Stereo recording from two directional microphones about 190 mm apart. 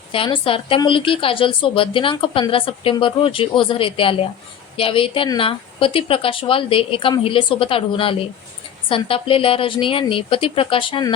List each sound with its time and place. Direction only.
0.1 s a woman's voice: 30° left (ahead or behind)